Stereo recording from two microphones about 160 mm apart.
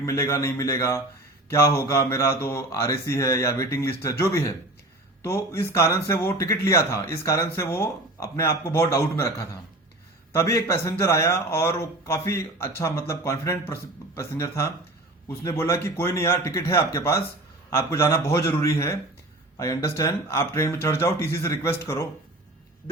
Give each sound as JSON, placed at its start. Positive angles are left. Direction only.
{"t": 0.0, "sound": "a man's voice", "side_deg": 15}